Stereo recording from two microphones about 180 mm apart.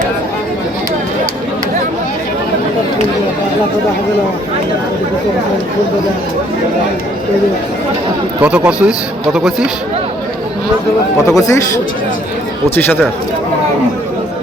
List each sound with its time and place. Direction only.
8.4 s a man's voice: 10° right (ahead or behind)
11.3 s a man's voice: 15° left (ahead or behind)